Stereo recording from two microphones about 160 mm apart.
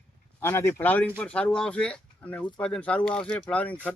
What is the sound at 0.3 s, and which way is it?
Speech, 15° left (ahead or behind).